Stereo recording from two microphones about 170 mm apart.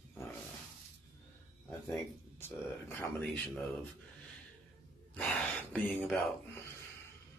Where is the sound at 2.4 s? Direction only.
15° left (ahead or behind).